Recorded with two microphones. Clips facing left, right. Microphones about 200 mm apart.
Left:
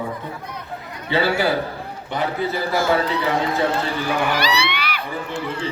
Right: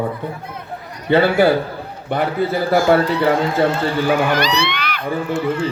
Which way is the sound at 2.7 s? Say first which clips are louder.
Right 6 dB; 55° right (ahead or behind).